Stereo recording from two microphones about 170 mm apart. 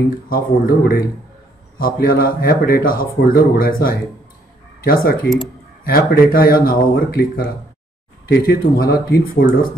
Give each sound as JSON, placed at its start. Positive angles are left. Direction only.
{"t": 0.3, "sound": "speech", "side_deg": 60}